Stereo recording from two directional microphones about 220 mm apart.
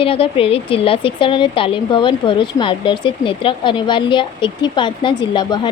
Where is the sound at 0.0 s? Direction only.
25° left (ahead or behind).